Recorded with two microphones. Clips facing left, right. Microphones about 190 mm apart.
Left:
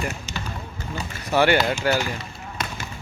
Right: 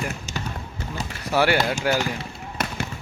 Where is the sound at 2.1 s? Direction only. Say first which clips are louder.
Right 2 dB; 60° right (ahead or behind).